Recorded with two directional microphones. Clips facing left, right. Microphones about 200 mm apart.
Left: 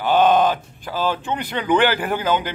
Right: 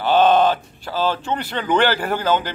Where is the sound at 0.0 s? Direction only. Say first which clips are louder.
Right 1 dB; 10° left (ahead or behind).